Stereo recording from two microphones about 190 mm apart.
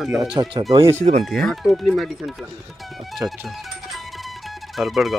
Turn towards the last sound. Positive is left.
turn(degrees=0)  # may be behind; listen again after turning